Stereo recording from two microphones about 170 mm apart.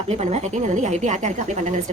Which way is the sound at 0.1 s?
40° right (ahead or behind).